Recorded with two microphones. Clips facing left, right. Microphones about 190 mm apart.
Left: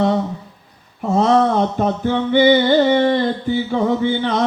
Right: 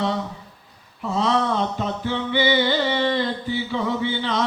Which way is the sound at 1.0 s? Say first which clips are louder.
Left 7 dB; 50° left (ahead or behind).